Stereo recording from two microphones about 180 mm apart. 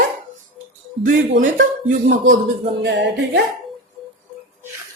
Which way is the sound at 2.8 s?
75° right (ahead or behind).